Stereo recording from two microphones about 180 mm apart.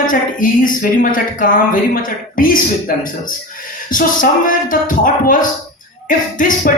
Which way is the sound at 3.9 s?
50° left (ahead or behind).